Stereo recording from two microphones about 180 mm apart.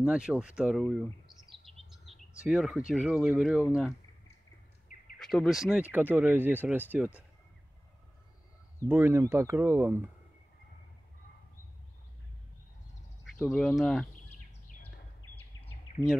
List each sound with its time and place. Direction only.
0.0 s speech: 5° right (ahead or behind)
1.9 s bird: centre (ahead or behind)
2.9 s speech: centre (ahead or behind)
4.9 s a sound: 45° left (ahead or behind)
5.2 s speech: centre (ahead or behind)
8.8 s speech: 10° right (ahead or behind)
13.4 s speech: 5° left (ahead or behind)